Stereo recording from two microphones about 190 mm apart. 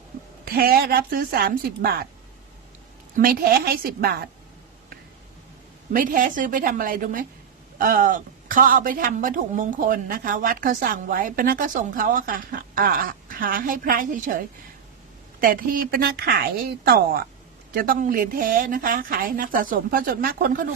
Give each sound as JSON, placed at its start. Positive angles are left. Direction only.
{"t": 0.4, "sound": "a woman's voice", "side_deg": -50}
{"t": 3.2, "sound": "a woman's voice", "side_deg": -50}
{"t": 5.9, "sound": "a woman's voice", "side_deg": -45}